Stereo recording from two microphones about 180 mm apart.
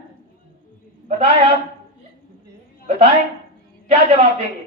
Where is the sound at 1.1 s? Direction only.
30° right (ahead or behind).